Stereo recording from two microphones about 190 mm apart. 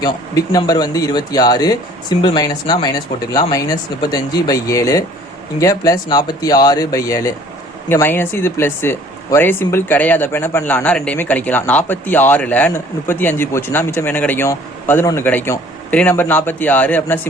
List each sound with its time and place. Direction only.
0.0 s speech: 20° left (ahead or behind)